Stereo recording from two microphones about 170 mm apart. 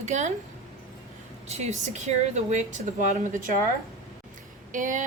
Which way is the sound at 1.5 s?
40° right (ahead or behind).